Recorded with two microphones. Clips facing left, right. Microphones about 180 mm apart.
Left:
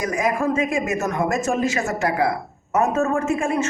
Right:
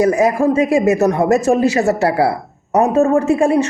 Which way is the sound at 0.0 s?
35° right (ahead or behind).